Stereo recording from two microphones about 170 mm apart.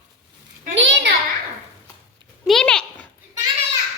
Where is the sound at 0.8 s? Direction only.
90° right.